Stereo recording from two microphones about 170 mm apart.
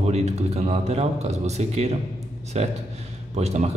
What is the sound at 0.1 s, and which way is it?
A man's voice, 40° right (ahead or behind).